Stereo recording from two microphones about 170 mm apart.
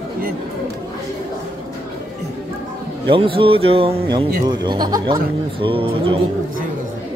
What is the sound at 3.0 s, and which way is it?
Speech, 30° right (ahead or behind).